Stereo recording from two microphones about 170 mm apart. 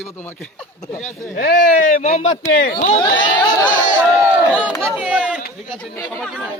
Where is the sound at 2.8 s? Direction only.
35° left (ahead or behind).